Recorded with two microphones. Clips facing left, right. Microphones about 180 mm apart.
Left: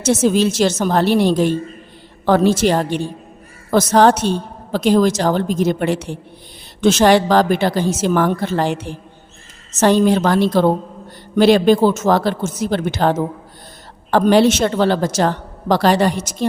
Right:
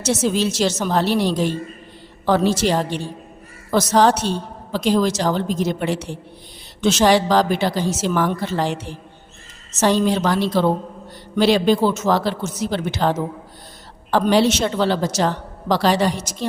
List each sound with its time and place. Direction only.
0.0 s a woman's voice: 50° left (ahead or behind)